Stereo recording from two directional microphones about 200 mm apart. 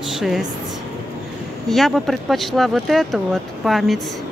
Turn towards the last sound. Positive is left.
turn(degrees=0)  # may be behind; listen again after turning